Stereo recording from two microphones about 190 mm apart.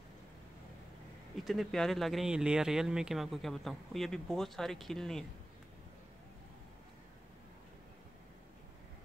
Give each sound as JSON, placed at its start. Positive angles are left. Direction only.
{"t": 1.4, "sound": "speech", "side_deg": 0}